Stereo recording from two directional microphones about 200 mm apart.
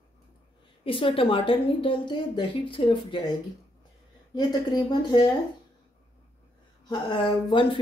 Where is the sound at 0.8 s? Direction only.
25° left (ahead or behind).